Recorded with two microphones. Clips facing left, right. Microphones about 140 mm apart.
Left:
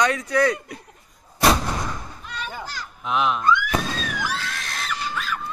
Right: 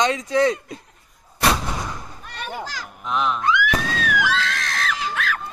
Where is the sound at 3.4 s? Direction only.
90° right.